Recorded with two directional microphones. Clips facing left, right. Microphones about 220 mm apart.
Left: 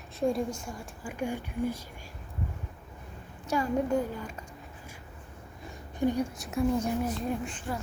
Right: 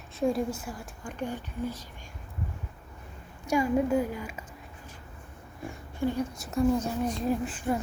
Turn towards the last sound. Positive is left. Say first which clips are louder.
# right 4 dB
turn(degrees=0)  # may be behind; listen again after turning